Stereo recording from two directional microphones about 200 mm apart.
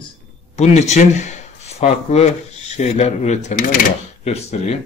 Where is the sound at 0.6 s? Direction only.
35° left (ahead or behind).